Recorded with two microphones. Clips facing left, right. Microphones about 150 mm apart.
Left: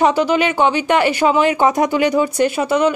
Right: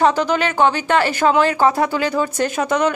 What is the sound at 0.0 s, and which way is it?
Speech, 10° left (ahead or behind).